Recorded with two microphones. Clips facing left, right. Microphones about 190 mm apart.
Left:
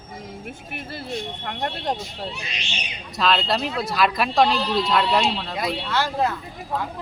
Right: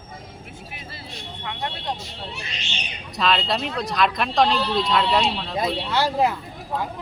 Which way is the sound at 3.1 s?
Centre (ahead or behind).